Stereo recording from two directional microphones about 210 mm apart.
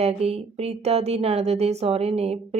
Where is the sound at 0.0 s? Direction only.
30° right (ahead or behind).